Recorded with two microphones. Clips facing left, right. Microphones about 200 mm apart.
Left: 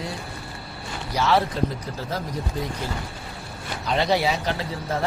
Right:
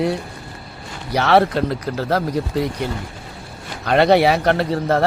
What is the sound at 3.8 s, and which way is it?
Speech, 65° right (ahead or behind).